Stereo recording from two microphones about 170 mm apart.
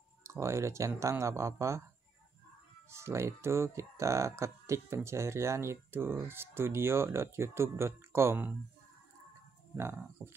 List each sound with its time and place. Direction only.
0.2 s speech: 15° right (ahead or behind)
2.9 s speech: 15° right (ahead or behind)
9.8 s speech: 15° right (ahead or behind)